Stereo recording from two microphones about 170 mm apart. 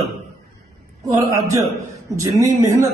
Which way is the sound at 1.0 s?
20° right (ahead or behind).